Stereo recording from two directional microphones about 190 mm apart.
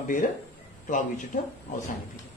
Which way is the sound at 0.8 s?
40° left (ahead or behind).